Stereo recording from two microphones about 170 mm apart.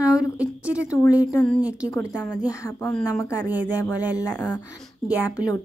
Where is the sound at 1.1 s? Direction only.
5° right (ahead or behind).